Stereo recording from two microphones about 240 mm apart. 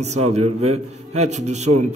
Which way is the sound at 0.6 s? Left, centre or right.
Right.